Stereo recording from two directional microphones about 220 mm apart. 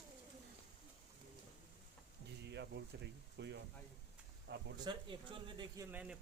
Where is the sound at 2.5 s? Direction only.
50° right (ahead or behind).